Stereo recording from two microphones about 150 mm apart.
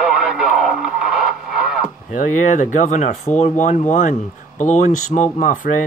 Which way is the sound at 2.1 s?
55° left (ahead or behind).